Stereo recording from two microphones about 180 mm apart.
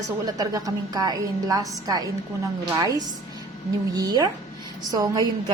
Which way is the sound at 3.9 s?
20° right (ahead or behind).